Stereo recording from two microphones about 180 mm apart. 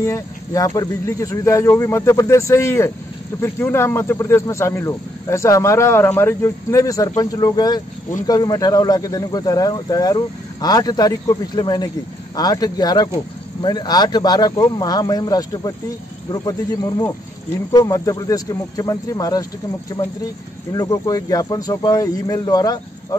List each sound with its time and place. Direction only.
0.0 s speech: 15° left (ahead or behind)
20.7 s speech: 20° left (ahead or behind)